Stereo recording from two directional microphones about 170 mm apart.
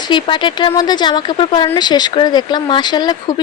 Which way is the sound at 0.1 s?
30° left (ahead or behind).